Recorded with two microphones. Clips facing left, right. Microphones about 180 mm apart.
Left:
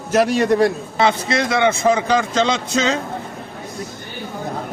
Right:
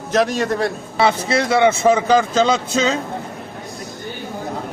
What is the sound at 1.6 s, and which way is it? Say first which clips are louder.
Speech: right 2 dB; 5° right (ahead or behind).